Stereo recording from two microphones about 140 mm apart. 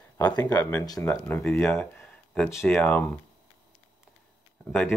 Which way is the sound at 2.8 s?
10° left (ahead or behind).